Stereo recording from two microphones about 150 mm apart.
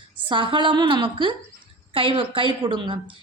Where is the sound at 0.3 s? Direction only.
35° right (ahead or behind).